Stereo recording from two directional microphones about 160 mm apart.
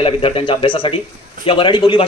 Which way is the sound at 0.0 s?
35° left (ahead or behind).